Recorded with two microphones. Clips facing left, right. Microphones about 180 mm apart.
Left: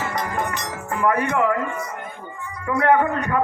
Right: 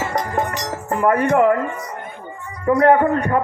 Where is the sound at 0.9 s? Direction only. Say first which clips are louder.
Right 4 dB; 40° right (ahead or behind).